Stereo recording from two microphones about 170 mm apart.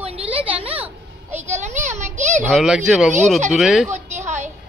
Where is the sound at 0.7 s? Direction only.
10° right (ahead or behind).